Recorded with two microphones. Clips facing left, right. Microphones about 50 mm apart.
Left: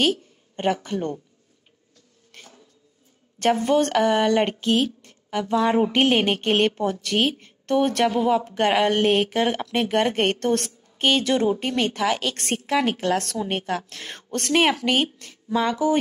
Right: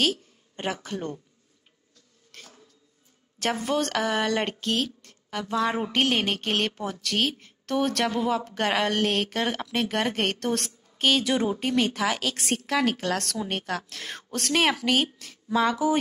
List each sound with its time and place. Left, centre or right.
0.0 s a woman's voice: centre
2.3 s a sound: centre
3.3 s a woman's voice: centre
4.3 s a woman's voice: centre
8.9 s a woman's voice: centre